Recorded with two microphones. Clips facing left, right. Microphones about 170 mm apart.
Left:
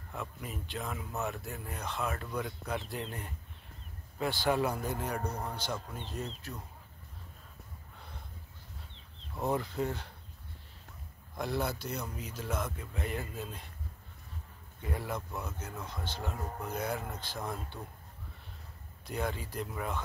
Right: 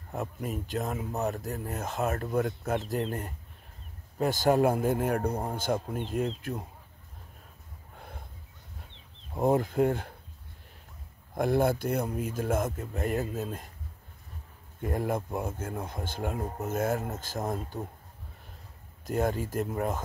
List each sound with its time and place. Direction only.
0.1 s speech: 40° right (ahead or behind)
9.3 s speech: 50° right (ahead or behind)
11.3 s speech: 50° right (ahead or behind)
14.8 s speech: 50° right (ahead or behind)
19.0 s speech: 45° right (ahead or behind)